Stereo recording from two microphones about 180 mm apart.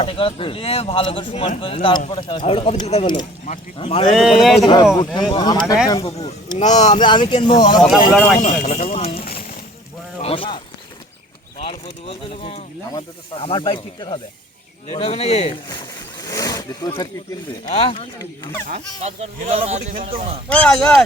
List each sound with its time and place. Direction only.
0.0 s speech: 30° left (ahead or behind)
4.1 s speech: centre (ahead or behind)
4.6 s speech: 25° left (ahead or behind)
6.6 s speech: 40° left (ahead or behind)
7.0 s speech: 25° left (ahead or behind)
8.4 s speech: 40° left (ahead or behind)
10.2 s speech: 30° left (ahead or behind)
11.6 s speech: 30° left (ahead or behind)
16.1 s wild animals: 20° left (ahead or behind)
17.7 s speech: 30° left (ahead or behind)
18.9 s speech: 35° right (ahead or behind)
20.5 s speech: 5° left (ahead or behind)